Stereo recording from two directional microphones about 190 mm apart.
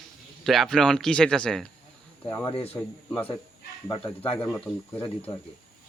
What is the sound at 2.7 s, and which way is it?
Speech, 10° left (ahead or behind).